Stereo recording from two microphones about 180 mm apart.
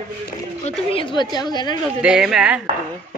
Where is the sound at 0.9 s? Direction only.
30° left (ahead or behind).